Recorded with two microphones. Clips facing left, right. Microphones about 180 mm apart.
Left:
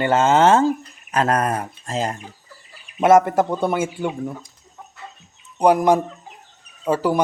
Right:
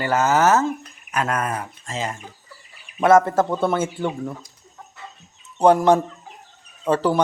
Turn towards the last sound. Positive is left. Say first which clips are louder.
# even
turn(degrees=10)  # may be behind; listen again after turning